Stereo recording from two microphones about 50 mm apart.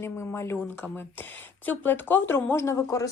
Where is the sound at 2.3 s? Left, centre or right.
Left.